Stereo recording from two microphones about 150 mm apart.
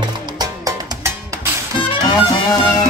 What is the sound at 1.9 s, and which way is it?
Music, 30° left (ahead or behind).